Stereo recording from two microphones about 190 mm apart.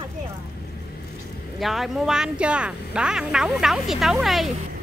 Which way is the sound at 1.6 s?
Centre (ahead or behind).